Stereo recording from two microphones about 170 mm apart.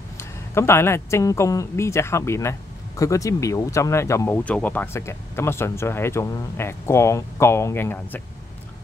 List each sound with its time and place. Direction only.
0.6 s speech: 15° left (ahead or behind)